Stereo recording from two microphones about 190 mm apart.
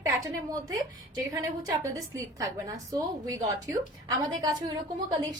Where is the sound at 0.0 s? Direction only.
20° right (ahead or behind).